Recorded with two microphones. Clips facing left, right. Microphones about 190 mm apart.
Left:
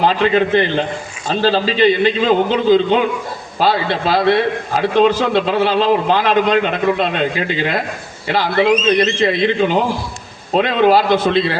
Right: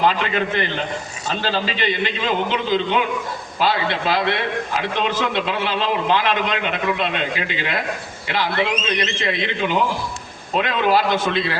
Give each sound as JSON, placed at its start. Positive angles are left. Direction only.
{"t": 0.0, "sound": "a man's voice", "side_deg": 35}